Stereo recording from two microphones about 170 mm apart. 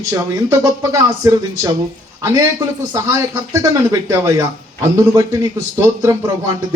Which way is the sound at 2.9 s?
20° right (ahead or behind).